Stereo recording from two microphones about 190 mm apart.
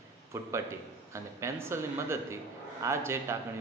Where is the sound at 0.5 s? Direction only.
15° right (ahead or behind).